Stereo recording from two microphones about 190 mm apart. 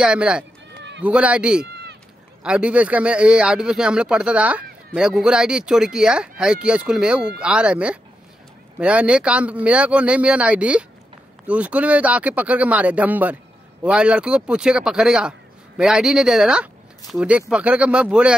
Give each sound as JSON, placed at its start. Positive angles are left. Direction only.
{"t": 0.0, "sound": "speech", "side_deg": -5}
{"t": 0.7, "sound": "run", "side_deg": -70}
{"t": 1.0, "sound": "speech", "side_deg": -5}